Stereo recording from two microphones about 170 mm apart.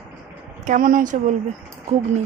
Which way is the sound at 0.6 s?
50° right (ahead or behind).